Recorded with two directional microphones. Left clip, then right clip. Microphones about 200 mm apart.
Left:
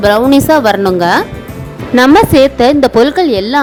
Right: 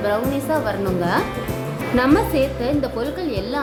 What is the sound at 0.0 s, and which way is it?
A woman's voice, 50° left (ahead or behind).